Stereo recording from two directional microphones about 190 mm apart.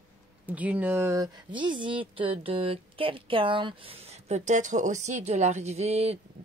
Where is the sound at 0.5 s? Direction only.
10° right (ahead or behind).